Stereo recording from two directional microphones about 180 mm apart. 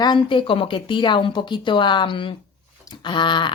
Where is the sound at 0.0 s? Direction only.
25° left (ahead or behind).